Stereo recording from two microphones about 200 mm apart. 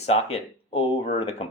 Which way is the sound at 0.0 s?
30° left (ahead or behind).